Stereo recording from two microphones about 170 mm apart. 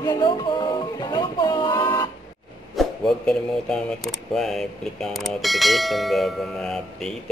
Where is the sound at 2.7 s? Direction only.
5° left (ahead or behind).